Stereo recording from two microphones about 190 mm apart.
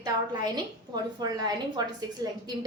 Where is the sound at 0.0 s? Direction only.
20° right (ahead or behind).